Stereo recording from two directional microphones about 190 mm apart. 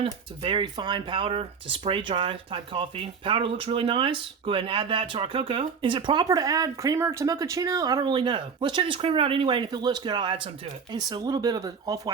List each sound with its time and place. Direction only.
0.0 s speech: 25° right (ahead or behind)